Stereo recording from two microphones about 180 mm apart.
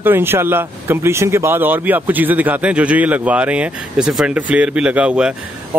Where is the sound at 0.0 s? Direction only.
10° right (ahead or behind).